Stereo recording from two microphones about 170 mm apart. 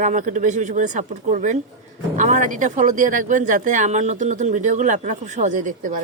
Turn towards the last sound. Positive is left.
turn(degrees=-50)  # may be behind; listen again after turning